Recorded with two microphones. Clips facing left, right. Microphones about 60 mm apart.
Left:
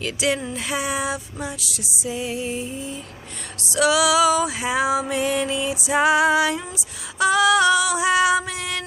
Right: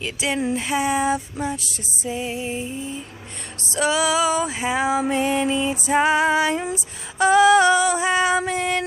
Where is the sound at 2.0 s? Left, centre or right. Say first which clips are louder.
Even; right.